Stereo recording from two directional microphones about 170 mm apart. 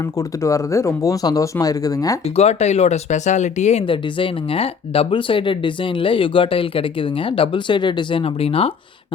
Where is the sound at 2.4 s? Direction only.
40° left (ahead or behind).